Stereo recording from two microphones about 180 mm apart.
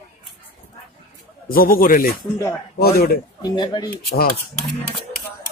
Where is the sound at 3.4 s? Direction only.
25° left (ahead or behind).